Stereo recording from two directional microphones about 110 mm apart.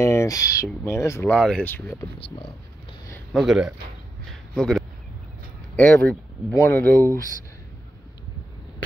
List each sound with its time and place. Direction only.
0.0 s speech: 25° left (ahead or behind)
1.3 s speech: 5° left (ahead or behind)
1.7 s speech: 20° left (ahead or behind)
3.3 s speech: 5° right (ahead or behind)
4.3 s a sound: 5° left (ahead or behind)
5.8 s speech: 15° left (ahead or behind)